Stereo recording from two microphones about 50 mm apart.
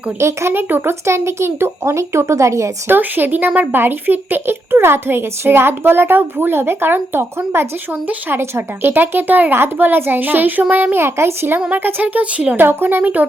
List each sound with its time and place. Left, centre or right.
0.2 s a child's voice: right
0.5 s a woman's voice: right
1.0 s a child's voice: right
2.8 s a child's voice: right
11.0 s speech: right
11.7 s a child's voice: right
12.0 s speech: right
12.5 s a woman's voice: right